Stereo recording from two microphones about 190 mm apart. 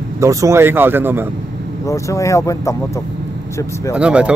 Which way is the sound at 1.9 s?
15° left (ahead or behind).